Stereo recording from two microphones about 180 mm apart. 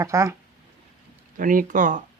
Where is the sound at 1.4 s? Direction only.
50° right (ahead or behind).